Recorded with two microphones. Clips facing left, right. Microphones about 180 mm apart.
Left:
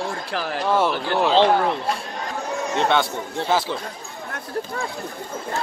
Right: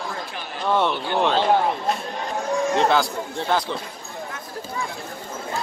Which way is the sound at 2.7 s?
Centre (ahead or behind).